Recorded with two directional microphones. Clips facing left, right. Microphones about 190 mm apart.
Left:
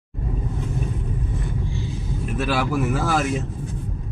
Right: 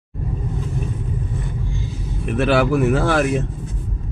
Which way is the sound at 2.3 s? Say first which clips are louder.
Right 7 dB; 65° right (ahead or behind).